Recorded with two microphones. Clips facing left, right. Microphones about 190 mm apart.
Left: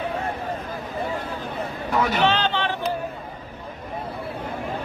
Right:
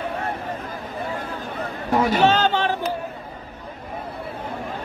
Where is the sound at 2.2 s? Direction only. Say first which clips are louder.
Right 4 dB; 45° right (ahead or behind).